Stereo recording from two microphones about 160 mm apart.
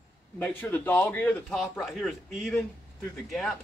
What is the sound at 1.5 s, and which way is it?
Speech, centre (ahead or behind).